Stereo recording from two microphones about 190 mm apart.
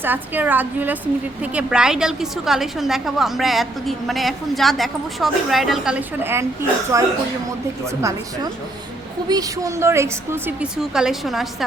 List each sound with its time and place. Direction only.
0.0 s a woman's voice: 10° right (ahead or behind)
9.3 s a woman's voice: 20° right (ahead or behind); by 11.4 s centre (ahead or behind)